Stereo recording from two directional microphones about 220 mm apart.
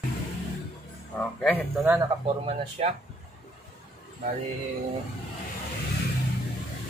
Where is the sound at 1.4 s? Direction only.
5° left (ahead or behind).